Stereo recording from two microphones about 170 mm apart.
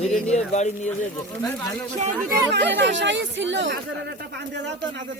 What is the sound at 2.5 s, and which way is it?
Speech, 90° right.